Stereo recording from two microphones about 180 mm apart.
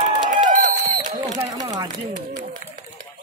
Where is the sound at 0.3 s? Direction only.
45° right (ahead or behind).